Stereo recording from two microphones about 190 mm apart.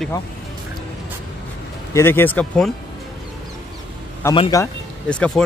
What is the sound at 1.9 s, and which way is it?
Speech, 10° left (ahead or behind).